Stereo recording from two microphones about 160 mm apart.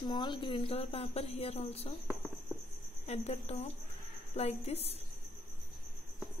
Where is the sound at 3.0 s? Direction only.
40° left (ahead or behind).